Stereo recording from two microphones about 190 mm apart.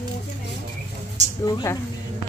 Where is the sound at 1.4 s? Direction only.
20° left (ahead or behind).